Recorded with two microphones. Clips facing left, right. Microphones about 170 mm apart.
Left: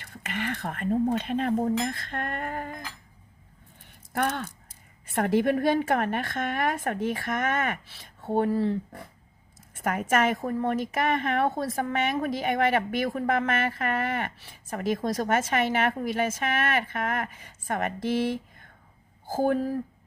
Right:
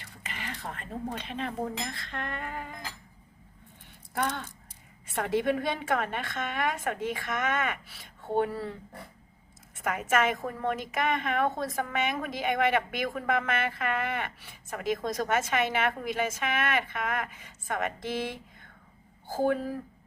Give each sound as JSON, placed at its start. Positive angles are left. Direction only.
{"t": 0.0, "sound": "a woman's voice", "side_deg": 60}
{"t": 4.1, "sound": "a woman's voice", "side_deg": 60}
{"t": 9.8, "sound": "a woman's voice", "side_deg": 50}
{"t": 19.3, "sound": "speech", "side_deg": 40}